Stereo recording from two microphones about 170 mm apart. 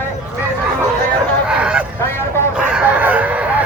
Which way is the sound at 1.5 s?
5° right (ahead or behind).